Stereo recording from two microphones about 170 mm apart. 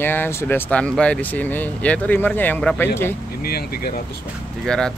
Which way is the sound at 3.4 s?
65° left (ahead or behind).